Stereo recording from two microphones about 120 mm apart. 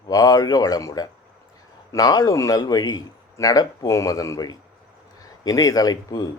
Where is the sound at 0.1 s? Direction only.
30° left (ahead or behind).